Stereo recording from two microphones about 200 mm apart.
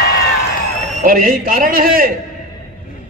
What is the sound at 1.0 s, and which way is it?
A man's voice, 45° right (ahead or behind).